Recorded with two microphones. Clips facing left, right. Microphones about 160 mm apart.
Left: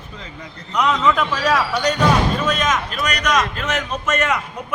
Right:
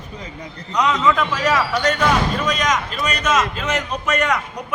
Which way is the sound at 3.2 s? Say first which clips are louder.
Even; 25° right (ahead or behind).